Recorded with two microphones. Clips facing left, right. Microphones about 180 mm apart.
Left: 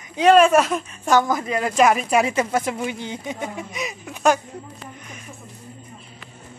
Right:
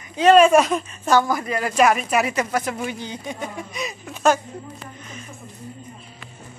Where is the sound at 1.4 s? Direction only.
Centre (ahead or behind).